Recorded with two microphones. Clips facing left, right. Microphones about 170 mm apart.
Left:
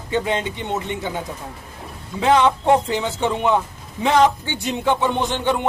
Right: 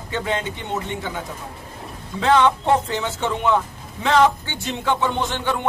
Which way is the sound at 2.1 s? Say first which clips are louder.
Left 1 dB; 15° left (ahead or behind).